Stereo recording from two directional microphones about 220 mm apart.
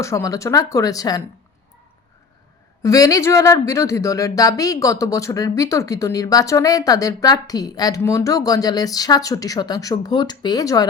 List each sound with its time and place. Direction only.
0.0 s speech: 15° left (ahead or behind)
2.8 s speech: 15° left (ahead or behind)